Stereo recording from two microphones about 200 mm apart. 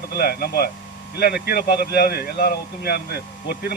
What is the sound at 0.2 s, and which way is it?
Speech, 50° left (ahead or behind).